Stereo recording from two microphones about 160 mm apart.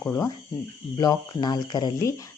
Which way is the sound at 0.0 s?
15° left (ahead or behind).